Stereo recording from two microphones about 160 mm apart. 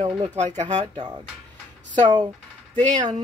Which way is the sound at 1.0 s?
25° right (ahead or behind).